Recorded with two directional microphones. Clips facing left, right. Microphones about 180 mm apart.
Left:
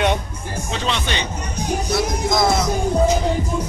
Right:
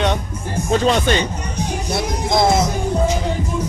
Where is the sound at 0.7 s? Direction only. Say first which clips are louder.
Right 9 dB; 45° right (ahead or behind).